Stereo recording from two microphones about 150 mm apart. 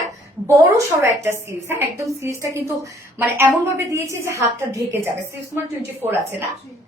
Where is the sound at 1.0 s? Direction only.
15° right (ahead or behind).